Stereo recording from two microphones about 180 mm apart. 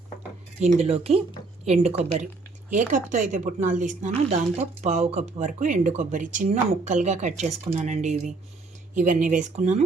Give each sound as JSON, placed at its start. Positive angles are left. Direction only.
{"t": 0.6, "sound": "speech", "side_deg": -35}